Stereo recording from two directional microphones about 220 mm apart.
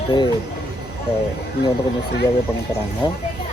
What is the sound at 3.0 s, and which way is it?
Speech, 20° left (ahead or behind).